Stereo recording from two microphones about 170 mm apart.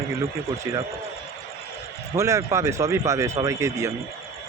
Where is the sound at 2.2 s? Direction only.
20° right (ahead or behind).